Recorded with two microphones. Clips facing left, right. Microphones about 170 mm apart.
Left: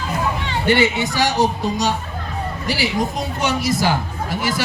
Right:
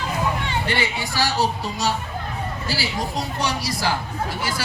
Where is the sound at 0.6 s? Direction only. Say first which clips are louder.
Left 8 dB; 25° left (ahead or behind).